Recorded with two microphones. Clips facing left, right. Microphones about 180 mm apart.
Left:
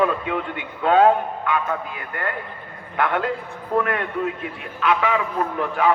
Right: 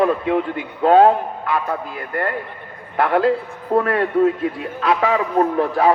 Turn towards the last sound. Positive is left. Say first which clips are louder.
# right 6 dB
turn(degrees=-35)  # may be behind; listen again after turning